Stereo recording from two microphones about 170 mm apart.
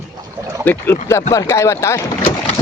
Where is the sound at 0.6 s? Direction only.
10° left (ahead or behind).